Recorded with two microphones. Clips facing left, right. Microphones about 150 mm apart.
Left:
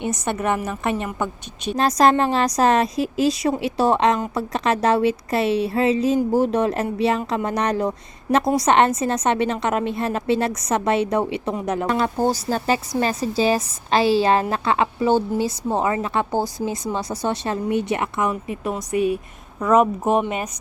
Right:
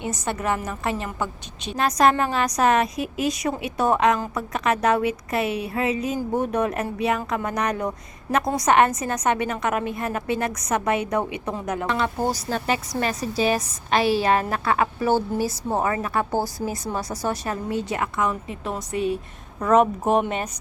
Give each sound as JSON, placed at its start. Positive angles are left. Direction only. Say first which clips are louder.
{"t": 0.0, "sound": "a woman's voice", "louder": "left 3 dB", "side_deg": 20}
{"t": 1.7, "sound": "a woman's voice", "louder": "left 3 dB", "side_deg": 35}
{"t": 11.9, "sound": "a woman's voice", "louder": "left 3 dB", "side_deg": 35}
{"t": 18.9, "sound": "speech", "louder": "left 4 dB", "side_deg": -25}
{"t": 19.5, "sound": "speech", "louder": "left 1 dB", "side_deg": 5}